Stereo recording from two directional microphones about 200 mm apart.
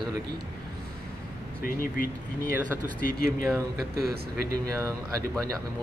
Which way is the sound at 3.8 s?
50° right (ahead or behind).